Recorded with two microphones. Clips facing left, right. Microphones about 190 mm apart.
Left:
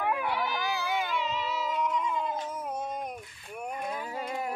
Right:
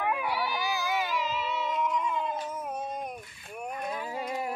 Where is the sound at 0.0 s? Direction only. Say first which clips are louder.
Even; 5° right (ahead or behind).